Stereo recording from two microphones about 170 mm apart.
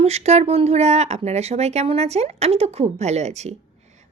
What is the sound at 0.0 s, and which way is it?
Speech, 40° right (ahead or behind).